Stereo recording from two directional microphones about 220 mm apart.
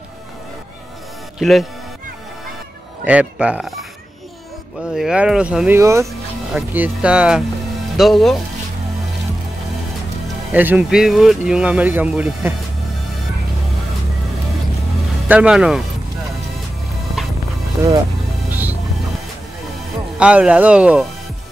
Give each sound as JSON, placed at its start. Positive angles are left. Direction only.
{"t": 1.4, "sound": "speech", "side_deg": 0}
{"t": 3.1, "sound": "speech", "side_deg": -5}
{"t": 4.9, "sound": "speech", "side_deg": -5}
{"t": 10.5, "sound": "speech", "side_deg": -10}
{"t": 15.2, "sound": "speech", "side_deg": -5}
{"t": 17.2, "sound": "music", "side_deg": 0}
{"t": 18.5, "sound": "music", "side_deg": -10}
{"t": 20.2, "sound": "speech", "side_deg": -5}